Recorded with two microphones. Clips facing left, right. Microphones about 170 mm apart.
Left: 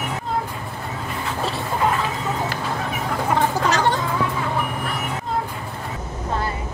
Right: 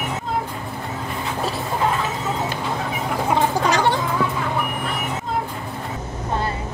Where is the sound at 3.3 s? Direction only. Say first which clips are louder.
Right 1 dB; 15° right (ahead or behind).